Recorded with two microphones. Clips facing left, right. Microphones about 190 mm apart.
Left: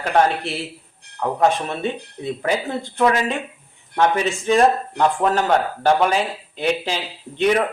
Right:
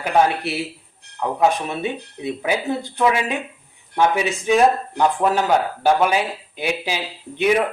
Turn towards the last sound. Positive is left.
turn(degrees=-10)  # may be behind; listen again after turning